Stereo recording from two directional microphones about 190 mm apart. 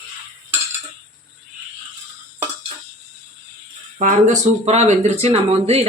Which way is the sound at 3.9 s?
40° right (ahead or behind).